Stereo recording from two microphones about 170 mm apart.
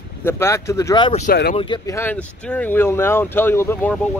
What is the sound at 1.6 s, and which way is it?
Speech, 30° left (ahead or behind).